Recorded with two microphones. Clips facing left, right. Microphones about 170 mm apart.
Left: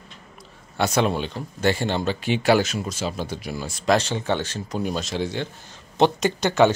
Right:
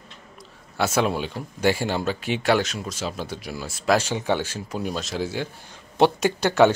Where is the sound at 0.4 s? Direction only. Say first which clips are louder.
Left 1 dB; 5° right (ahead or behind).